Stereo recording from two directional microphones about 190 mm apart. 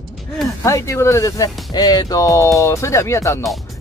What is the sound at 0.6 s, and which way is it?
Speech, 15° left (ahead or behind).